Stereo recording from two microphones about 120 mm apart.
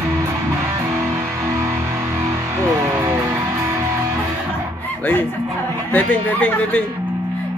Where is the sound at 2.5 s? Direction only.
20° right (ahead or behind).